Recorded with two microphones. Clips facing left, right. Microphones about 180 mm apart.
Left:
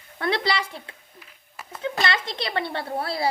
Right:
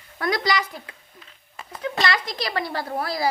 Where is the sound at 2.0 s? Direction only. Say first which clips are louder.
Right 2 dB; 25° left (ahead or behind).